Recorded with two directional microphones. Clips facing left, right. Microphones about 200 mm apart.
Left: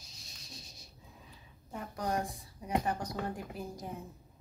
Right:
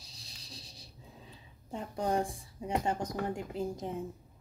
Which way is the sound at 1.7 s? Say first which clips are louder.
Right 3 dB; 25° right (ahead or behind).